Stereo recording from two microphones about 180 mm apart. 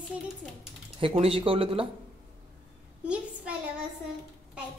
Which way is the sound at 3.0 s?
5° right (ahead or behind).